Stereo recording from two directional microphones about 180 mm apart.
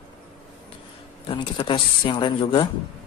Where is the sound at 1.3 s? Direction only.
30° left (ahead or behind).